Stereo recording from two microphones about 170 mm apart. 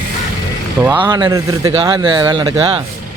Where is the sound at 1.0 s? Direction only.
25° right (ahead or behind).